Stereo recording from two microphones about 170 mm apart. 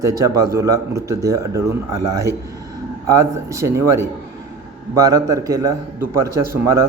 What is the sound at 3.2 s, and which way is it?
A man's voice, 15° right (ahead or behind).